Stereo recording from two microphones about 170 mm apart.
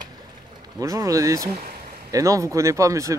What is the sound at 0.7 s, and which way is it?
Speech, 20° right (ahead or behind).